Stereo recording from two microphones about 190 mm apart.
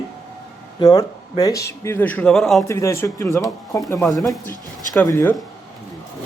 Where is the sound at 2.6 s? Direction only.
15° left (ahead or behind).